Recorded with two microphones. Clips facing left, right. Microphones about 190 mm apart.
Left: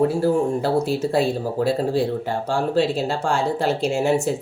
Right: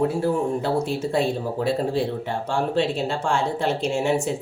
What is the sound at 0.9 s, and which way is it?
Speech, centre (ahead or behind).